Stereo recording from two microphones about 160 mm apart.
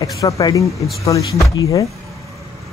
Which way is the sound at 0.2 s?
20° left (ahead or behind).